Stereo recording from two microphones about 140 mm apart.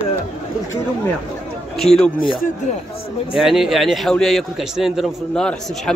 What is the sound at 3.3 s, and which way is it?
A man's voice, centre (ahead or behind).